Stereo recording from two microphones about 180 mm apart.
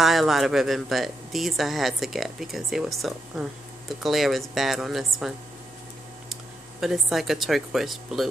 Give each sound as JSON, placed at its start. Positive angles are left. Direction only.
{"t": 0.0, "sound": "speech", "side_deg": 0}
{"t": 6.8, "sound": "speech", "side_deg": 0}